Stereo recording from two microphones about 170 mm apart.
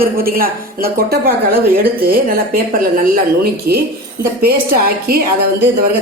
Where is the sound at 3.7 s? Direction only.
70° right (ahead or behind).